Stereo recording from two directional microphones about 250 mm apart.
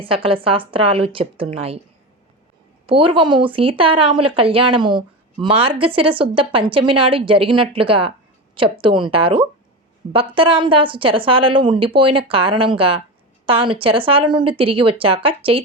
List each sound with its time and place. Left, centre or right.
0.0 s a woman's voice: right
2.8 s a woman's voice: right